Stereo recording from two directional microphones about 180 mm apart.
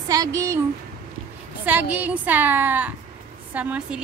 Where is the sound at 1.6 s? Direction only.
10° right (ahead or behind).